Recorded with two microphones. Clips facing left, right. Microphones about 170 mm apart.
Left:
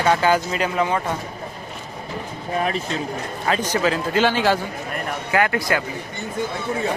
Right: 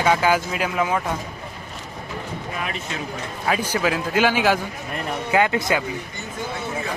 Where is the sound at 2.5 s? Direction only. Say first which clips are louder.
Left 9 dB; 35° left (ahead or behind).